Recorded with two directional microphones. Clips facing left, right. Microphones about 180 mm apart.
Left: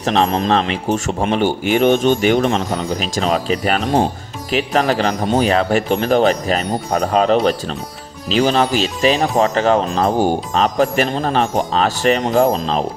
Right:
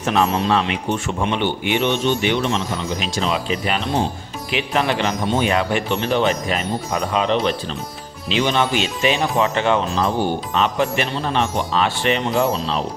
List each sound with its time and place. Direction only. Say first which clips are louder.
0.0 s speech: left 2 dB; 35° left (ahead or behind)